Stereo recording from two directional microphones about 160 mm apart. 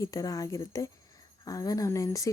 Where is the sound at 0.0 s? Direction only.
20° left (ahead or behind).